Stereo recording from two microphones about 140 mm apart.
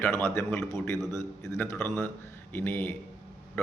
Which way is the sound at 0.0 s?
15° left (ahead or behind).